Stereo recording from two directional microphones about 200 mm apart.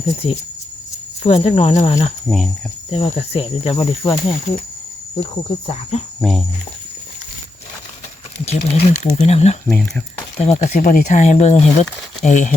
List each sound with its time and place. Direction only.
0.2 s speech: 30° left (ahead or behind)
2.2 s speech: centre (ahead or behind)
2.9 s speech: 30° left (ahead or behind)
6.1 s speech: 5° right (ahead or behind)
8.4 s speech: 30° left (ahead or behind)
9.6 s speech: 5° left (ahead or behind)
10.4 s speech: 35° left (ahead or behind)